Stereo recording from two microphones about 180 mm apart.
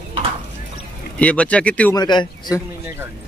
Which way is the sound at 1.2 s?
5° left (ahead or behind).